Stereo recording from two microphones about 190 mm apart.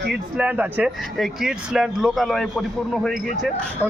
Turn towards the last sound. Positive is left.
turn(degrees=0)  # may be behind; listen again after turning